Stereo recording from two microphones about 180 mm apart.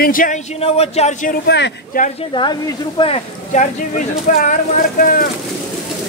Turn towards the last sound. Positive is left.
turn(degrees=50)  # may be behind; listen again after turning